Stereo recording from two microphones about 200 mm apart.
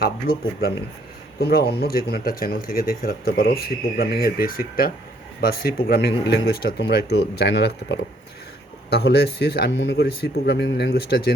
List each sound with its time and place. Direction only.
0.0 s speech: 50° left (ahead or behind)